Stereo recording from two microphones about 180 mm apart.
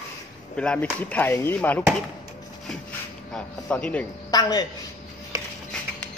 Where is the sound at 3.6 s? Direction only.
5° left (ahead or behind).